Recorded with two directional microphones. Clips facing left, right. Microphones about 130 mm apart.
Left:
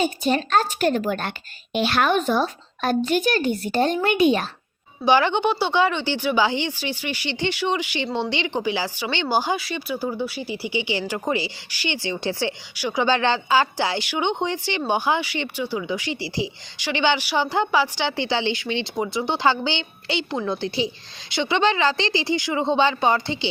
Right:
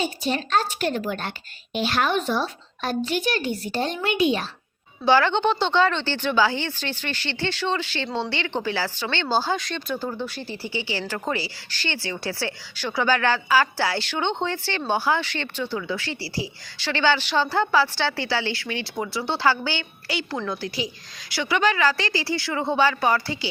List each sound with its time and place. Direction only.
0.0 s speech: 45° left (ahead or behind)
1.7 s speech: 65° left (ahead or behind)
5.0 s a woman's voice: 15° left (ahead or behind)